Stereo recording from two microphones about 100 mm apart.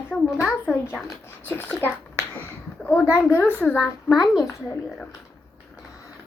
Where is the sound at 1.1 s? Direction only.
20° left (ahead or behind).